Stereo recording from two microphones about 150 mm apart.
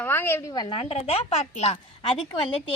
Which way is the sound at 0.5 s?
30° left (ahead or behind).